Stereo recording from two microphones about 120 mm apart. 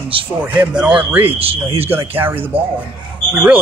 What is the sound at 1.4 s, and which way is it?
Speech, 50° right (ahead or behind).